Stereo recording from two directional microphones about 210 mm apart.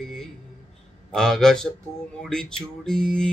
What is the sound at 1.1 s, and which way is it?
Speech, centre (ahead or behind).